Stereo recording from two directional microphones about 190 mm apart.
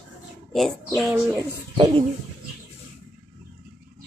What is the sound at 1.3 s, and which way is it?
Speech, 25° right (ahead or behind).